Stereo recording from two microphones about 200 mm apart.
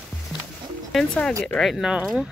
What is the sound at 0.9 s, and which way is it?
Speech, centre (ahead or behind).